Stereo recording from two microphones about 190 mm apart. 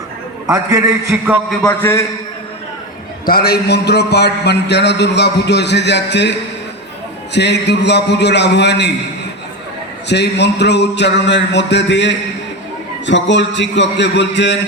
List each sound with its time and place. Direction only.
0.4 s a man's voice: 15° right (ahead or behind)
1.5 s a man's voice: 10° left (ahead or behind)
3.2 s a man's voice: 55° left (ahead or behind)
7.3 s a man's voice: 65° left (ahead or behind)
10.1 s a man's voice: 65° left (ahead or behind)